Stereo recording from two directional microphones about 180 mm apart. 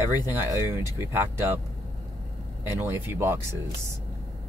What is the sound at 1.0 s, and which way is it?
Speech, 15° right (ahead or behind).